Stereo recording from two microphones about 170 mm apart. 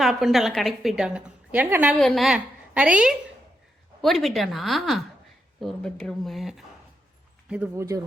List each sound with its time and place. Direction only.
0.0 s a woman's voice: centre (ahead or behind)
2.0 s a woman's voice: centre (ahead or behind)
7.5 s speech: 10° right (ahead or behind)